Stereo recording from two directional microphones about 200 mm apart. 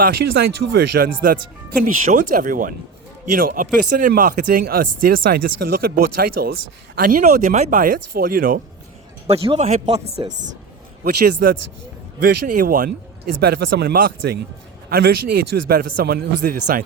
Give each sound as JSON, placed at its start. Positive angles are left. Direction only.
{"t": 0.0, "sound": "speech", "side_deg": -50}
{"t": 9.2, "sound": "speech", "side_deg": -30}
{"t": 11.0, "sound": "speech", "side_deg": -50}
{"t": 13.4, "sound": "speech", "side_deg": -55}